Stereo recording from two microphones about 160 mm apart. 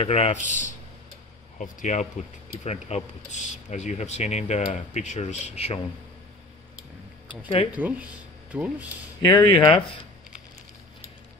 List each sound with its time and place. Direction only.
0.0 s speech: 40° left (ahead or behind)
7.2 s speech: 30° left (ahead or behind)
7.7 s speech: 10° right (ahead or behind)
9.3 s speech: 30° left (ahead or behind)